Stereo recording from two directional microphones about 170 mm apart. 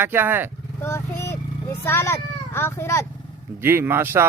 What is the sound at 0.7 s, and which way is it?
Speech, 15° left (ahead or behind).